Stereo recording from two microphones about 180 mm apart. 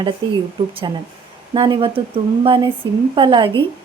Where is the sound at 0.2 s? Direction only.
25° right (ahead or behind).